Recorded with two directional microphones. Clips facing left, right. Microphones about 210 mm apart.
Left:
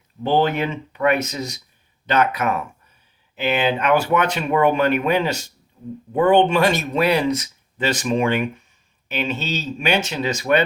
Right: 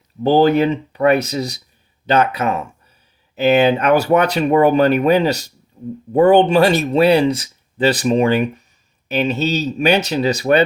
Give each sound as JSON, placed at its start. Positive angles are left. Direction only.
{"t": 0.2, "sound": "speech", "side_deg": -35}
{"t": 3.3, "sound": "speech", "side_deg": -40}